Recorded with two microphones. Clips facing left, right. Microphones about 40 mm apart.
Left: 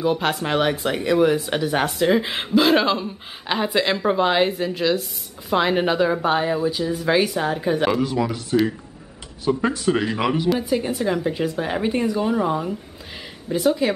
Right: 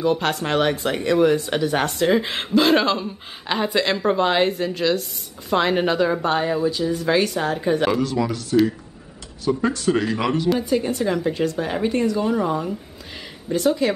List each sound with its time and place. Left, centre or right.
0.0 s speech: centre
8.0 s a woman's voice: centre